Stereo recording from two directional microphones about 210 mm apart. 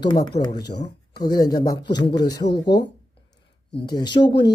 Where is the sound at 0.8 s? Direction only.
20° left (ahead or behind).